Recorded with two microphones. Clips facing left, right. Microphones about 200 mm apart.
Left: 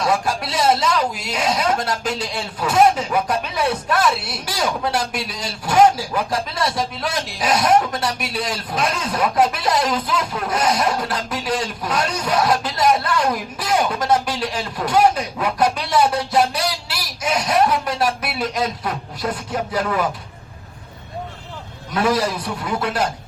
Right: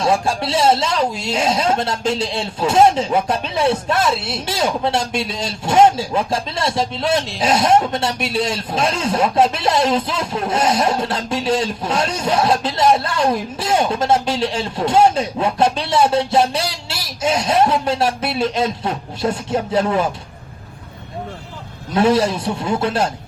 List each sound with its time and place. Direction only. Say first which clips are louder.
0.0 s speech: right 3 dB; 30° right (ahead or behind)
21.9 s speech: right 4 dB; 25° right (ahead or behind)